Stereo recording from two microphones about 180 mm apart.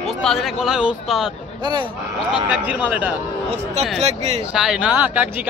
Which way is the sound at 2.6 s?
10° right (ahead or behind).